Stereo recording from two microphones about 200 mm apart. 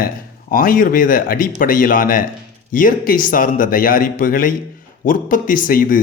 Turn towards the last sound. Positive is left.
turn(degrees=45)  # may be behind; listen again after turning